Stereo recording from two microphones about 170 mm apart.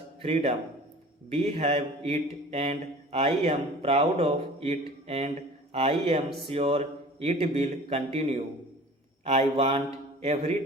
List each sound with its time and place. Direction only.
0.2 s a man's voice: 35° right (ahead or behind)